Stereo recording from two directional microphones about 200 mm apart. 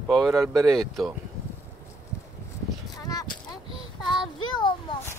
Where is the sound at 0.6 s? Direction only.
Centre (ahead or behind).